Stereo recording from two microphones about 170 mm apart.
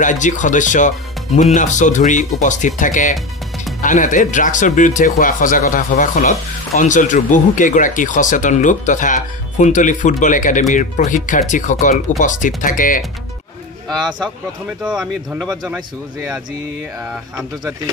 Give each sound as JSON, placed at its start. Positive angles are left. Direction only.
{"t": 0.0, "sound": "speech", "side_deg": 45}
{"t": 14.8, "sound": "speech", "side_deg": -5}
{"t": 17.1, "sound": "speech", "side_deg": -5}